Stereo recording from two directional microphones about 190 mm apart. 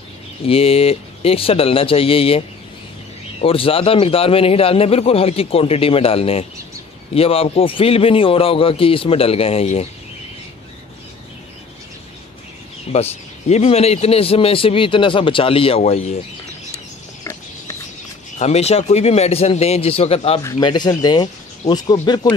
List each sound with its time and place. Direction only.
0.5 s a man's voice: 30° left (ahead or behind)
12.9 s a man's voice: 35° left (ahead or behind)
16.7 s a sound: 15° left (ahead or behind)
18.4 s a man's voice: 35° left (ahead or behind)